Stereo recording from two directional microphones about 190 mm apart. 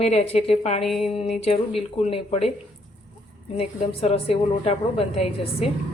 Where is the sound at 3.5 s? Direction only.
30° left (ahead or behind).